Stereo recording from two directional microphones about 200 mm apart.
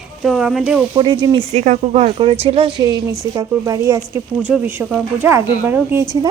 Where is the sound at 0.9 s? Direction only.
25° right (ahead or behind).